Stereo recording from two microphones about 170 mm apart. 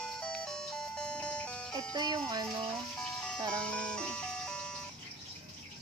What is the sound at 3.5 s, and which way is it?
Ice cream truck, 5° left (ahead or behind).